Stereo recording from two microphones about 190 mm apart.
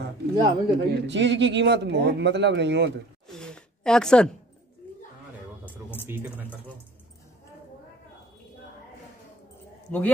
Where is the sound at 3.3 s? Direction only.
5° left (ahead or behind).